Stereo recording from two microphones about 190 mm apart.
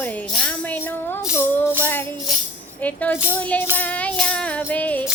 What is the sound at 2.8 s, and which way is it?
Speech, 10° left (ahead or behind).